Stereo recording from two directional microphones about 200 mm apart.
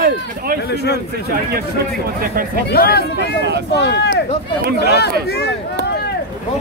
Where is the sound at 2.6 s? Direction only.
50° left (ahead or behind).